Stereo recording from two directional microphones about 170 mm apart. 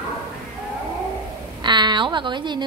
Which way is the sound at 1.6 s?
25° right (ahead or behind).